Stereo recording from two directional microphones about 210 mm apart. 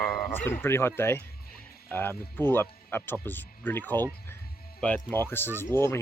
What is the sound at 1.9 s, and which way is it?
Speech, 10° left (ahead or behind).